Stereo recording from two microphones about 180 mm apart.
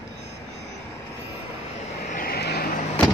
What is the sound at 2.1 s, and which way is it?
Vehicle, 55° left (ahead or behind).